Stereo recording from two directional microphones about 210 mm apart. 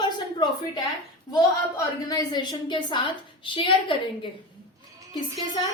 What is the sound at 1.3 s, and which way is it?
A woman's voice, 20° left (ahead or behind).